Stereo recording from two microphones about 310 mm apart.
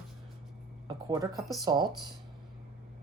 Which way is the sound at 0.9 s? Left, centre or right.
Centre.